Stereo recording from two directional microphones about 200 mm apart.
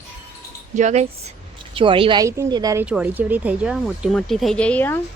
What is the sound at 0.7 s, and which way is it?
Speech, 35° right (ahead or behind).